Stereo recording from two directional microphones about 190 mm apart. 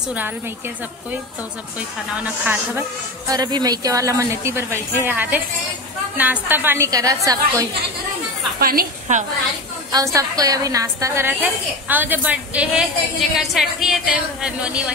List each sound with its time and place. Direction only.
2.1 s a woman's voice: 10° right (ahead or behind)
8.5 s a woman's voice: 50° right (ahead or behind)
9.1 s a woman's voice: 40° right (ahead or behind)
10.1 s a woman's voice: 20° right (ahead or behind)